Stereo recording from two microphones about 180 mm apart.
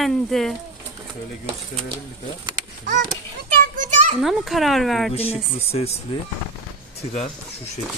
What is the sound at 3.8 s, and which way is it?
Children playing, 45° right (ahead or behind).